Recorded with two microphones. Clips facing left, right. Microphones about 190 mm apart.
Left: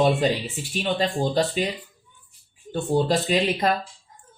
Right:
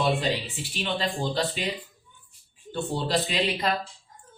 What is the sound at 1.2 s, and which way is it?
Speech, 45° left (ahead or behind).